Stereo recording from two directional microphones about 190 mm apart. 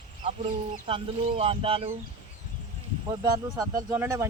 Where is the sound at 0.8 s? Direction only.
30° right (ahead or behind).